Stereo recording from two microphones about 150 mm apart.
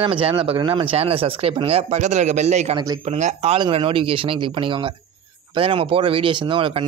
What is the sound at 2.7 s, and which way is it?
Speech, 30° right (ahead or behind).